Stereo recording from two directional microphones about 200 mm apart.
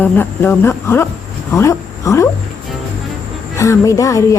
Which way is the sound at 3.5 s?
15° left (ahead or behind).